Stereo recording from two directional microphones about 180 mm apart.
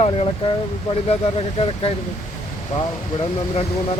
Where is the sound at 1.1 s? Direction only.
30° left (ahead or behind).